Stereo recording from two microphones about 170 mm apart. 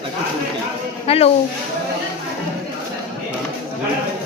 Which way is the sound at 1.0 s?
35° left (ahead or behind).